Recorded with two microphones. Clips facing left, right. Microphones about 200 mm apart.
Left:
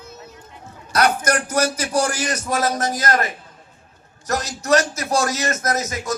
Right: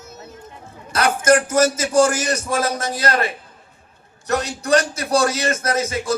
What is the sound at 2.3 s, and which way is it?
Speech, 30° right (ahead or behind).